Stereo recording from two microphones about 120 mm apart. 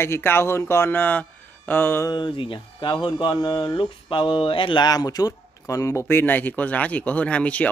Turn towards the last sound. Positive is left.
turn(degrees=10)  # may be behind; listen again after turning